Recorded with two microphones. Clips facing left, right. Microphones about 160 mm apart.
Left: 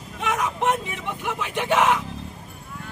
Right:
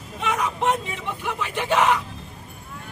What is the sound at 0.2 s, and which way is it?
Vehicle, 15° left (ahead or behind).